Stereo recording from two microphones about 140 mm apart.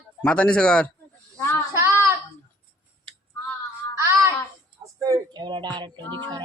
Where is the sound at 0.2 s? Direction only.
10° left (ahead or behind).